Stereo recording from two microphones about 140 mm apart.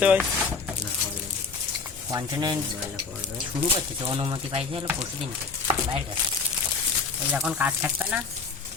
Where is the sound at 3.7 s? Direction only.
40° right (ahead or behind).